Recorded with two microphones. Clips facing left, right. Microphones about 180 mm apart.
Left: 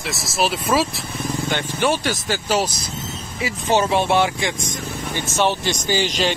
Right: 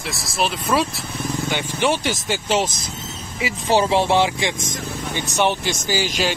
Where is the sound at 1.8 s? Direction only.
15° right (ahead or behind).